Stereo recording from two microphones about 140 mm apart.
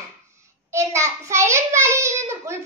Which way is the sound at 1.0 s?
20° right (ahead or behind).